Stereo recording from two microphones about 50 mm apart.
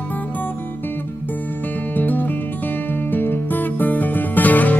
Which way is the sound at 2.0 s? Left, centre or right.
Left.